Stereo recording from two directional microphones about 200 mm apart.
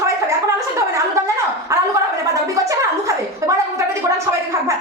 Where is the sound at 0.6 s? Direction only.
15° right (ahead or behind).